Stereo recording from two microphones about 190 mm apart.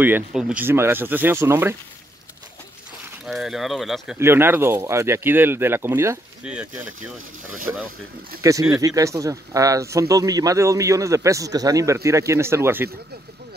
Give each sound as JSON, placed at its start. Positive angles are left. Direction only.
{"t": 0.0, "sound": "speech", "side_deg": -5}
{"t": 3.3, "sound": "speech", "side_deg": 0}
{"t": 4.2, "sound": "speech", "side_deg": -10}